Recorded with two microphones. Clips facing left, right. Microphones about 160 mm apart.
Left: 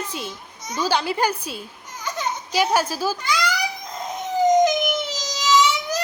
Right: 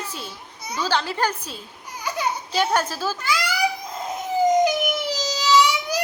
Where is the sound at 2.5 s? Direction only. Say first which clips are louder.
Left 3 dB; 10° left (ahead or behind).